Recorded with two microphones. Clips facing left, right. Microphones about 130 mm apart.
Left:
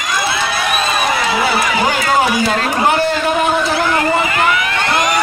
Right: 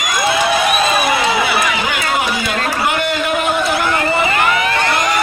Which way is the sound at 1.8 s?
35° left (ahead or behind).